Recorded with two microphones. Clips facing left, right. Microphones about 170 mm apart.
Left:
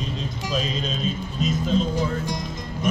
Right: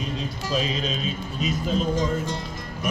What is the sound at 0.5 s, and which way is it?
Speech, 5° right (ahead or behind).